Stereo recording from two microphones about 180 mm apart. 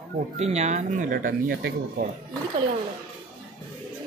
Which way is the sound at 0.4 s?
35° right (ahead or behind).